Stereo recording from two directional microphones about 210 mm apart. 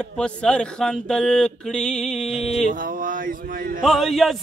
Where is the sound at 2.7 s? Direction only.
40° right (ahead or behind).